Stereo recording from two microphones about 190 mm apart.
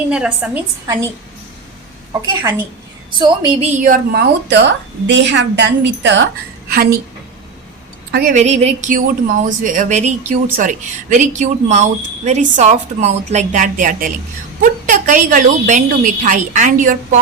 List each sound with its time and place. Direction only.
0.1 s a woman's voice: 5° right (ahead or behind)
2.2 s a woman's voice: 15° right (ahead or behind)
3.7 s a woman's voice: 40° right (ahead or behind)
4.1 s a woman's voice: 60° right (ahead or behind)
8.1 s a woman's voice: 45° right (ahead or behind)